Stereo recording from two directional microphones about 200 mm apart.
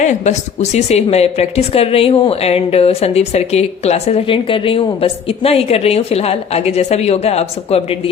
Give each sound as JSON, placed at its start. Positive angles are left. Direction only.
{"t": 0.0, "sound": "a woman's voice", "side_deg": 35}